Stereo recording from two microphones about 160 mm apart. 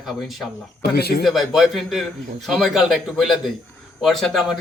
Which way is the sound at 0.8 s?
85° left.